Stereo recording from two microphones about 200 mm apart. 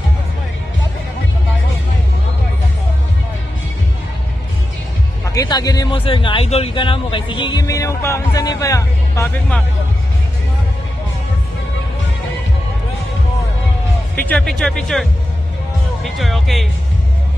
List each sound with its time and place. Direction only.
5.2 s speech: 15° left (ahead or behind)
14.1 s speech: 5° left (ahead or behind)